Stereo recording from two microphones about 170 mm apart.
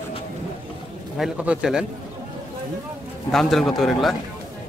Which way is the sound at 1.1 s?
5° right (ahead or behind).